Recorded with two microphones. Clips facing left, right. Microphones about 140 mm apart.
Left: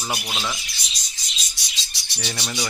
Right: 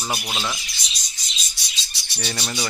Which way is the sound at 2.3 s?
5° right (ahead or behind).